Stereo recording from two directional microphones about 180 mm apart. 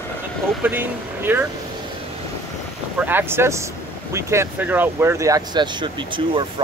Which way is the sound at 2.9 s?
10° right (ahead or behind).